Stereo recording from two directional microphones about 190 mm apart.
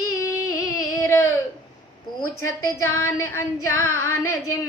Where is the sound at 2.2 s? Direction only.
15° left (ahead or behind).